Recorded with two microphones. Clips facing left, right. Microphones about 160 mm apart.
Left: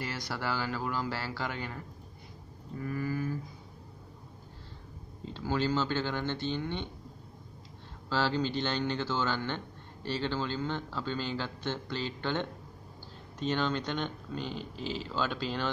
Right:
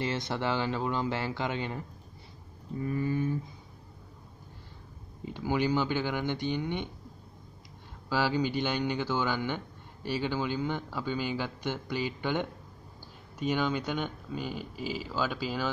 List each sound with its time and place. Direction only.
0.0 s speech: 25° right (ahead or behind)
2.8 s speech: 25° right (ahead or behind)
5.2 s a man's voice: 15° right (ahead or behind)
8.1 s a man's voice: 10° right (ahead or behind)